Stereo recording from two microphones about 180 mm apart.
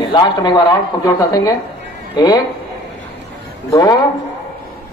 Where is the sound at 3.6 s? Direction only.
20° left (ahead or behind).